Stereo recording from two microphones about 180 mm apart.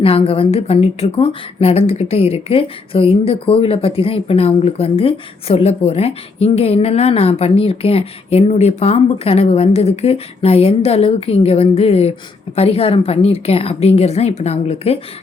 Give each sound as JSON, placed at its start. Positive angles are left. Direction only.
{"t": 0.0, "sound": "a woman's voice", "side_deg": 30}